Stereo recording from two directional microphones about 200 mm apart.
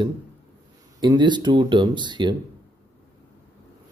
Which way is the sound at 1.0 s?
20° right (ahead or behind).